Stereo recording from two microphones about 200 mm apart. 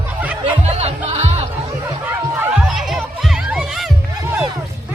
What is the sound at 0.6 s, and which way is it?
Music, 35° right (ahead or behind).